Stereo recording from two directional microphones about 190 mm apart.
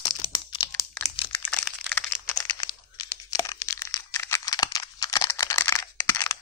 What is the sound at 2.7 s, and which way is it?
Tearing, 20° left (ahead or behind).